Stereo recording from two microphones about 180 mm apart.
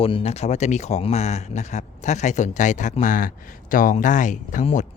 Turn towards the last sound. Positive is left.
turn(degrees=45)  # may be behind; listen again after turning